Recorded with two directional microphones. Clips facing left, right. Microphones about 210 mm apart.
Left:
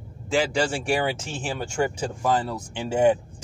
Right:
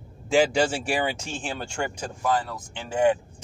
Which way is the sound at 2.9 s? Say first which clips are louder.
Left 2 dB; 15° left (ahead or behind).